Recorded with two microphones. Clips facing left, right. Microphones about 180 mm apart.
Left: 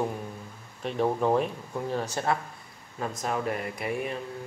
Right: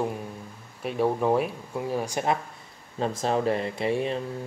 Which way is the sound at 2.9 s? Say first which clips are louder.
Right 5 dB; 30° right (ahead or behind).